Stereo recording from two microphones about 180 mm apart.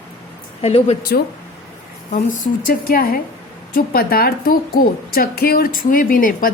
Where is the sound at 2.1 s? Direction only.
50° left (ahead or behind).